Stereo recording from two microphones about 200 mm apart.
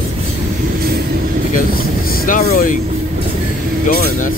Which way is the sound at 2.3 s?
45° left (ahead or behind).